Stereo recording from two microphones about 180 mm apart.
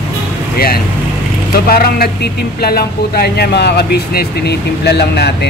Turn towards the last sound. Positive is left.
turn(degrees=65)  # may be behind; listen again after turning